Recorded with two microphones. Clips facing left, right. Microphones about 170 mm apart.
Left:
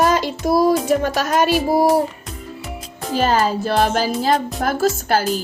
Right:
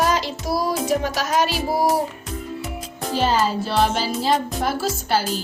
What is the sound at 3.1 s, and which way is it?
Music, 50° left (ahead or behind).